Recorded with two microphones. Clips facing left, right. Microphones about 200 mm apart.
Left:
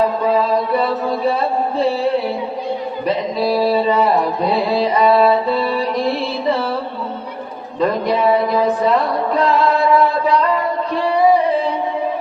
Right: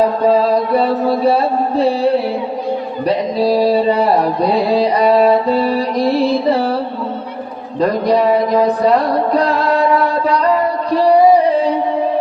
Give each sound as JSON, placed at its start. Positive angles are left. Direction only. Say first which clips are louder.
{"t": 0.3, "sound": "music", "louder": "right 4 dB", "side_deg": -40}
{"t": 3.1, "sound": "mantra", "louder": "right 4 dB", "side_deg": -35}
{"t": 7.8, "sound": "music", "louder": "right 3 dB", "side_deg": -40}